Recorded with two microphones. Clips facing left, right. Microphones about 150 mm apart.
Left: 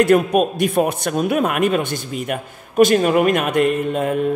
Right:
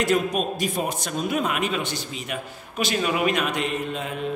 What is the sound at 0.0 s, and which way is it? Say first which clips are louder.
A man's voice: left 8 dB; 55° left (ahead or behind).